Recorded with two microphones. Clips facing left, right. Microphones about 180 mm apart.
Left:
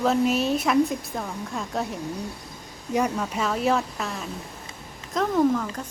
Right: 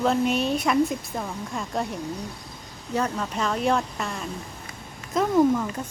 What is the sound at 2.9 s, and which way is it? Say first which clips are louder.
A woman's voice: left 2 dB; 10° left (ahead or behind).